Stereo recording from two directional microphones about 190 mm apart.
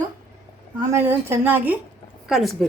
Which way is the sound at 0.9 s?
15° right (ahead or behind).